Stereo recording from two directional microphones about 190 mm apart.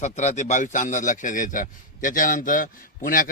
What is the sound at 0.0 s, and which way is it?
A man's voice, 35° left (ahead or behind).